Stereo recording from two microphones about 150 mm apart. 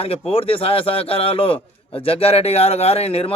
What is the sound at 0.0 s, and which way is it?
A man's voice, 40° left (ahead or behind).